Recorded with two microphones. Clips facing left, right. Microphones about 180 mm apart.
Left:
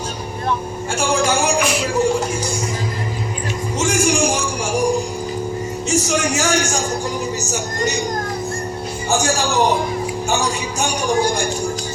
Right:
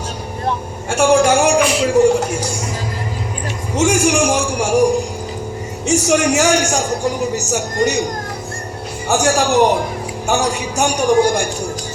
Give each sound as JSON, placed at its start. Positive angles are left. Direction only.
{"t": 0.9, "sound": "a man's voice", "side_deg": -65}
{"t": 2.0, "sound": "music", "side_deg": -70}
{"t": 3.8, "sound": "music", "side_deg": -70}
{"t": 5.9, "sound": "a man's voice", "side_deg": -70}
{"t": 9.0, "sound": "a man's voice", "side_deg": -70}